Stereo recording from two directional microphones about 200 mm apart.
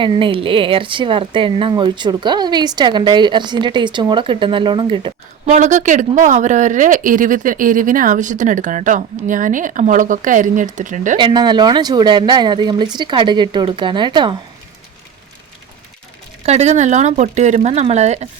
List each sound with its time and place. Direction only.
0.0 s speech: 25° right (ahead or behind)
5.5 s speech: 40° right (ahead or behind)
11.2 s speech: 25° right (ahead or behind)
16.4 s speech: 35° right (ahead or behind)